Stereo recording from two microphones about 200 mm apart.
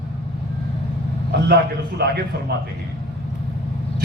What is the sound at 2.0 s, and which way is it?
Speech, 55° right (ahead or behind).